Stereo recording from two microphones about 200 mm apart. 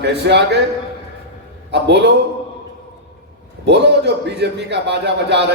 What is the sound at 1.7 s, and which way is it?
Speech, 60° right (ahead or behind).